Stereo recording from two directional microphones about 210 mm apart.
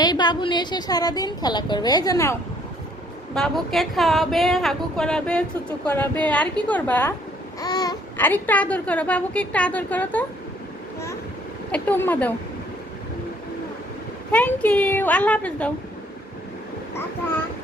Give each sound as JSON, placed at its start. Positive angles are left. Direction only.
{"t": 0.0, "sound": "a woman's voice", "side_deg": 20}
{"t": 3.3, "sound": "a woman's voice", "side_deg": 0}
{"t": 7.6, "sound": "a child's voice", "side_deg": 20}
{"t": 11.7, "sound": "a child's voice", "side_deg": 10}
{"t": 14.3, "sound": "a child's voice", "side_deg": 5}